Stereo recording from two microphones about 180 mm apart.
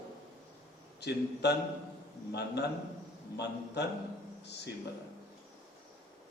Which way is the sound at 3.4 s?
70° left (ahead or behind).